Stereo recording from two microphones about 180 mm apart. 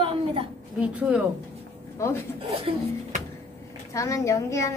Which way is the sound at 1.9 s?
15° left (ahead or behind).